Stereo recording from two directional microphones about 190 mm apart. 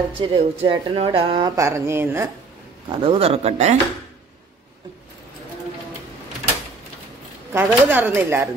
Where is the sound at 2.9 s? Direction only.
30° right (ahead or behind).